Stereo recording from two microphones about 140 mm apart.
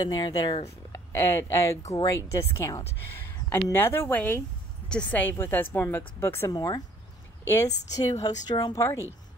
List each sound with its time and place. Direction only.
0.0 s a woman's voice: 30° left (ahead or behind)